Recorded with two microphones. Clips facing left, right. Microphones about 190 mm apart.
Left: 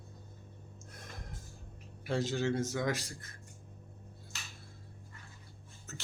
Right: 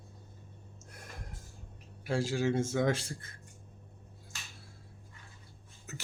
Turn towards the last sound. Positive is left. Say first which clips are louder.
# right 2 dB
turn(degrees=-15)  # may be behind; listen again after turning